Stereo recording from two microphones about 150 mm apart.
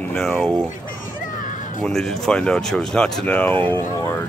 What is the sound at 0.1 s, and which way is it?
Speech, 5° left (ahead or behind).